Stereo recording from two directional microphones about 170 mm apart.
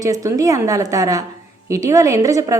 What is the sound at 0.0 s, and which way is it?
A woman's voice, 20° right (ahead or behind).